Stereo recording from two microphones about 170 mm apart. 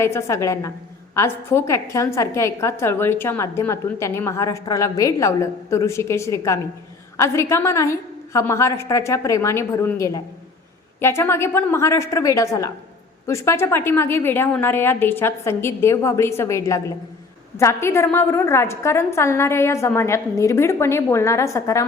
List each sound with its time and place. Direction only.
0.0 s a woman's voice: 15° left (ahead or behind)